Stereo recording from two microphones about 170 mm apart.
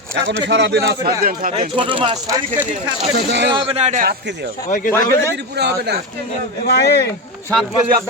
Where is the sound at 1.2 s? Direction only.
55° right (ahead or behind).